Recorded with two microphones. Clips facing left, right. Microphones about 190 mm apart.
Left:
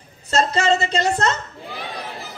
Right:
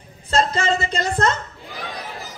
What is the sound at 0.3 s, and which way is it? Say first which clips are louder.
A woman's voice: left 1 dB; 55° right (ahead or behind).